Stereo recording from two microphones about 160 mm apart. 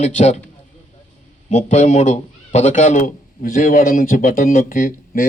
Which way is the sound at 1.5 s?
50° left (ahead or behind).